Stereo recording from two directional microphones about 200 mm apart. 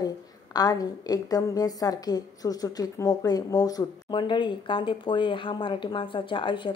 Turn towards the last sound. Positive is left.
turn(degrees=25)  # may be behind; listen again after turning